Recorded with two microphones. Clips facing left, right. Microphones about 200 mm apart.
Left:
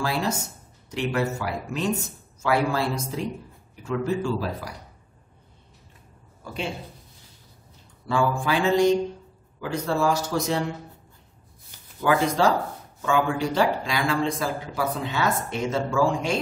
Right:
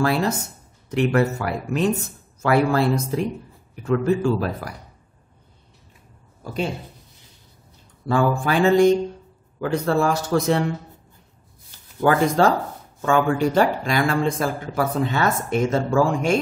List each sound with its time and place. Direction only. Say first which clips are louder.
0.0 s a man's voice: right 5 dB; 60° right (ahead or behind)
8.1 s a man's voice: right 3 dB; 45° right (ahead or behind)
12.0 s speech: right 4 dB; 50° right (ahead or behind)